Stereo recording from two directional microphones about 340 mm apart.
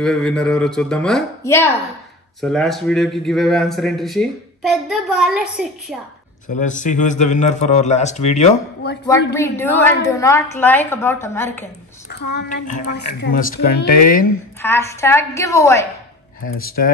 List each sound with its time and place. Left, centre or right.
0.0 s speech: centre
6.5 s a man's voice: left
9.3 s a woman's voice: centre
12.1 s a man's voice: left
14.6 s a woman's voice: centre
16.5 s a man's voice: left